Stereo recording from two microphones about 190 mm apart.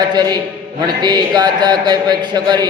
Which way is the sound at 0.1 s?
20° right (ahead or behind).